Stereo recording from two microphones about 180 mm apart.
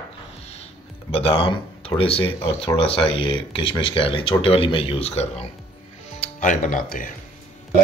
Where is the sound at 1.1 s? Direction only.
30° left (ahead or behind); by 7.1 s 50° left (ahead or behind).